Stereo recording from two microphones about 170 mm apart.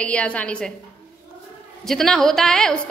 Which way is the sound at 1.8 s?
Centre (ahead or behind).